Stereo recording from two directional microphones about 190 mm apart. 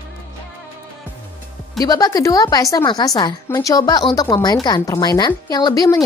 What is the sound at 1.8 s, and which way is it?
A woman's voice, 20° left (ahead or behind).